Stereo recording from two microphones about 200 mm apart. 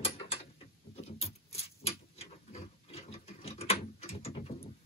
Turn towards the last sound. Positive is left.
turn(degrees=30)  # may be behind; listen again after turning